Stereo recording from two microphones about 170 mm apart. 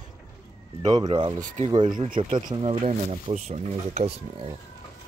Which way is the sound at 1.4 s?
45° right (ahead or behind).